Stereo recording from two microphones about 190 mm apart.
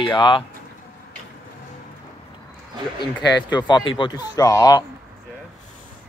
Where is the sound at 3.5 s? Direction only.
25° left (ahead or behind).